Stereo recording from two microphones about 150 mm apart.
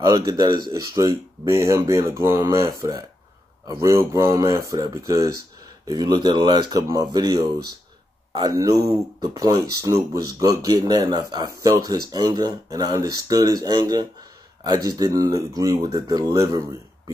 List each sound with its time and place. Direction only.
0.0 s speech: 25° right (ahead or behind)